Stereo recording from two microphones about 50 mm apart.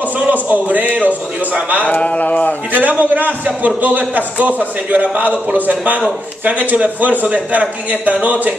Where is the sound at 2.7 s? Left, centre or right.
Right.